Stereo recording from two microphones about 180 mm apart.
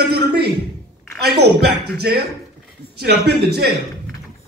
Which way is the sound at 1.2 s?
65° right (ahead or behind).